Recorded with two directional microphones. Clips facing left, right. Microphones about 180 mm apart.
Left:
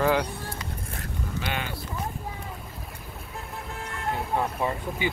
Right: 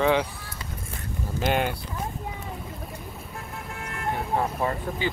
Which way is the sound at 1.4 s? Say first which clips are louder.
Right 8 dB; 50° right (ahead or behind).